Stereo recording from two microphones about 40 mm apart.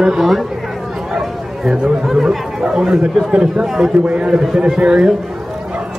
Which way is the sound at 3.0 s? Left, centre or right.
Right.